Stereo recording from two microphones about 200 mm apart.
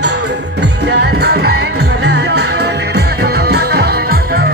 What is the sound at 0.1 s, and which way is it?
Music, 60° right (ahead or behind).